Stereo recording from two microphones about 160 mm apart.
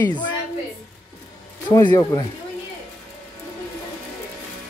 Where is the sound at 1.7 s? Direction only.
20° left (ahead or behind).